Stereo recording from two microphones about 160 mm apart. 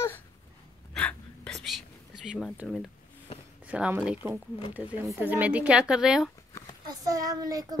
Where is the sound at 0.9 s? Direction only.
5° left (ahead or behind).